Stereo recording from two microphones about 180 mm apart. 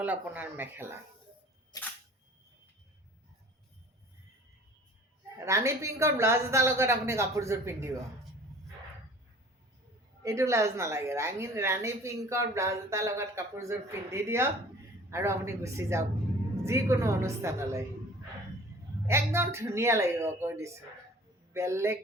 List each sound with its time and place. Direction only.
0.0 s a woman's voice: 10° right (ahead or behind)
1.7 s camera: 20° left (ahead or behind)
5.5 s a woman's voice: 15° right (ahead or behind)
10.2 s a woman's voice: 15° right (ahead or behind)
19.0 s a woman's voice: 15° right (ahead or behind)